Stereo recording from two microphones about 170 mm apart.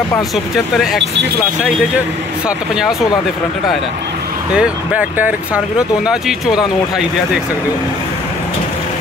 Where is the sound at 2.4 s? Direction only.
5° right (ahead or behind).